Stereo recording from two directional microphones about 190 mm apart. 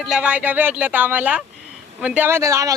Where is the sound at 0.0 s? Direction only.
5° right (ahead or behind).